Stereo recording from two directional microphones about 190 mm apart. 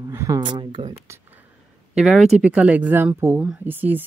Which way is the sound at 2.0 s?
Centre (ahead or behind).